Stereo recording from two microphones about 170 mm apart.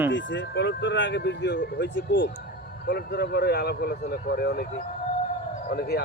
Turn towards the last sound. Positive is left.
turn(degrees=70)  # may be behind; listen again after turning